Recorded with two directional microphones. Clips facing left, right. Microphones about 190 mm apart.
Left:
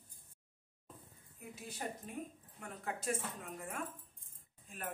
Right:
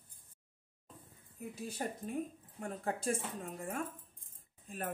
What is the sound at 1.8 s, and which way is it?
Speech, 35° right (ahead or behind).